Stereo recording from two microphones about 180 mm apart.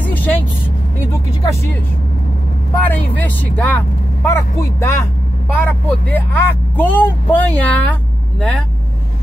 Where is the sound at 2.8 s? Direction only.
10° left (ahead or behind).